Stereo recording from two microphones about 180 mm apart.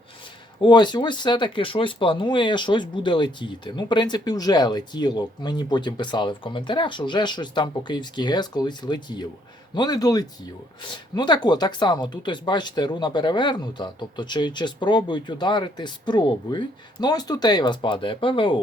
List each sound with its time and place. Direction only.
0.6 s speech: 25° left (ahead or behind)